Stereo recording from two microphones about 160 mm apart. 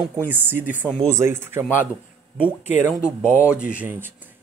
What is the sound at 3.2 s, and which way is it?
Speech, 15° left (ahead or behind).